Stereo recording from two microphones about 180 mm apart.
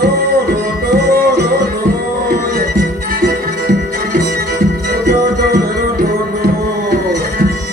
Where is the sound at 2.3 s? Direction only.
55° right (ahead or behind).